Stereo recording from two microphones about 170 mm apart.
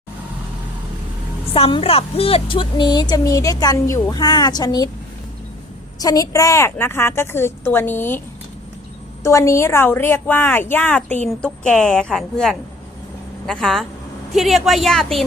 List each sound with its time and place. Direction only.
1.5 s speech: 35° left (ahead or behind)
6.0 s a woman's voice: 20° left (ahead or behind)
9.2 s a woman's voice: 15° left (ahead or behind); by 15.2 s centre (ahead or behind)